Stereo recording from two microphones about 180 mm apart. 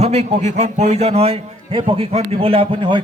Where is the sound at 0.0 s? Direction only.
35° right (ahead or behind).